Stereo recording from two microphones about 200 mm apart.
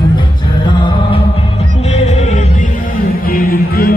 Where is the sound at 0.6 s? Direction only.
25° left (ahead or behind).